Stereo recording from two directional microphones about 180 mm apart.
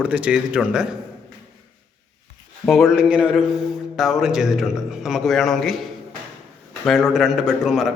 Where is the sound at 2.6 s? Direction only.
Centre (ahead or behind).